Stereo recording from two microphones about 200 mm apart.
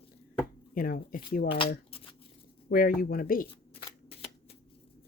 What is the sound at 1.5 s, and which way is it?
Speech, 25° left (ahead or behind).